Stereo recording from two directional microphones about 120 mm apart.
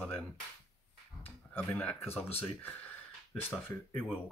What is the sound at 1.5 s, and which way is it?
Speech, 15° left (ahead or behind).